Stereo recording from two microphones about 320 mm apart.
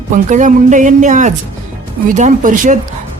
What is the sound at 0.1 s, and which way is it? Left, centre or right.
A woman's voice, right.